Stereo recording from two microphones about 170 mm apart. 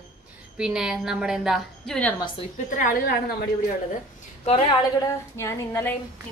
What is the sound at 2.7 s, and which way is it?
Speech, 55° left (ahead or behind).